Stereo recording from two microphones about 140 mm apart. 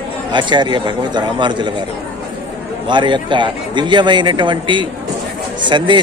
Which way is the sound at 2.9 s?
35° right (ahead or behind).